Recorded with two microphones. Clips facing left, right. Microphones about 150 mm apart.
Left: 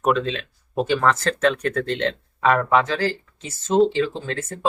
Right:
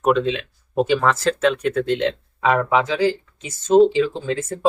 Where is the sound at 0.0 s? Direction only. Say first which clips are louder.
Right 3 dB; centre (ahead or behind).